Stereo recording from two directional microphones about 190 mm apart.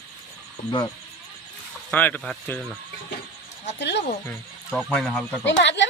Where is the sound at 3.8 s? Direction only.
65° left (ahead or behind).